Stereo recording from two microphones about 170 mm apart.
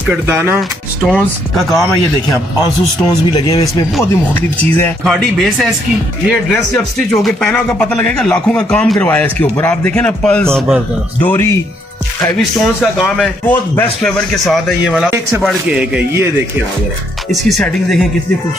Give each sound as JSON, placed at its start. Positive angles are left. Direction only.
{"t": 0.1, "sound": "speech", "side_deg": -15}
{"t": 0.6, "sound": "speech", "side_deg": 0}
{"t": 3.3, "sound": "speech", "side_deg": 20}
{"t": 11.2, "sound": "speech", "side_deg": 15}
{"t": 12.4, "sound": "speech", "side_deg": 0}
{"t": 13.5, "sound": "speech", "side_deg": 10}
{"t": 14.3, "sound": "speech", "side_deg": 0}
{"t": 17.3, "sound": "speech", "side_deg": 0}